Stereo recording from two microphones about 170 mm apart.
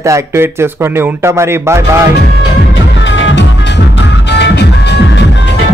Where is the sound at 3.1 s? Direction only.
90° left.